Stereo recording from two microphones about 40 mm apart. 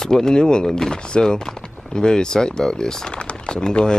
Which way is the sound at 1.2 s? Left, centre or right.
Centre.